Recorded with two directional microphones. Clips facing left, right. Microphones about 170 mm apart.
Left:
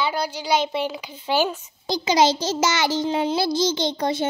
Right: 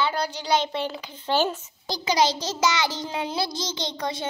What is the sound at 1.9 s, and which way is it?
A child's voice, 25° left (ahead or behind).